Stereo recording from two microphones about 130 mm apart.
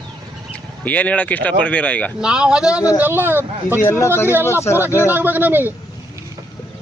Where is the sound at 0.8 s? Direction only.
10° left (ahead or behind).